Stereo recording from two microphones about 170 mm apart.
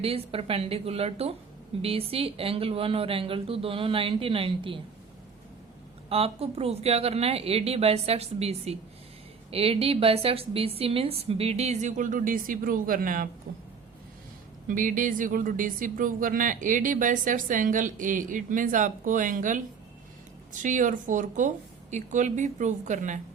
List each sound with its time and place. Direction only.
0.0 s a woman's voice: 35° right (ahead or behind)
6.1 s a woman's voice: 35° right (ahead or behind); by 13.2 s 55° right (ahead or behind)
14.7 s speech: 50° right (ahead or behind)